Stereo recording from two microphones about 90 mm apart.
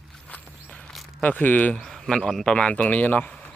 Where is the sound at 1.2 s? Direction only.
15° left (ahead or behind).